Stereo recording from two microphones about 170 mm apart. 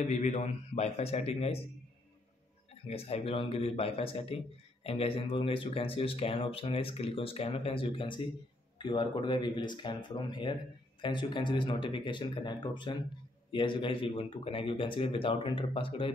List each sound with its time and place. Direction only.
0.0 s speech: 40° left (ahead or behind)
2.9 s speech: 35° left (ahead or behind)